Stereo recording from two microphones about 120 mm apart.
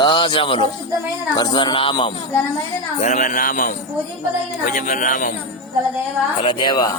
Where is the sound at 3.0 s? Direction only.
80° left.